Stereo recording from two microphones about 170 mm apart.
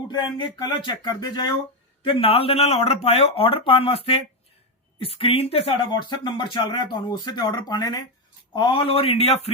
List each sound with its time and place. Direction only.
0.1 s speech: 25° left (ahead or behind)